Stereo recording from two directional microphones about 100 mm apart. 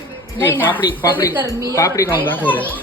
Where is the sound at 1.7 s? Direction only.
35° left (ahead or behind).